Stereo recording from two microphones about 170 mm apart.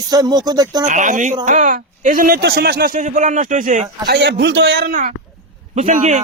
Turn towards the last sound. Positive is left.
turn(degrees=-45)  # may be behind; listen again after turning